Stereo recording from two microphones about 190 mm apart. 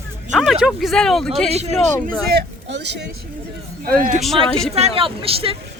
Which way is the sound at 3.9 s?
45° right (ahead or behind).